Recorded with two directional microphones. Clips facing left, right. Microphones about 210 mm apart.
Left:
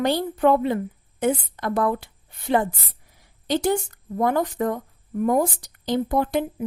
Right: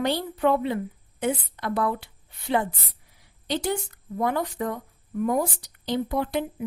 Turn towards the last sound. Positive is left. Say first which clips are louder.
# left 4 dB
turn(degrees=45)  # may be behind; listen again after turning